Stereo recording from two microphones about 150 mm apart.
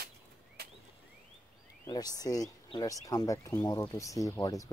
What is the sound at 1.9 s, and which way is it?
Speech, 25° left (ahead or behind).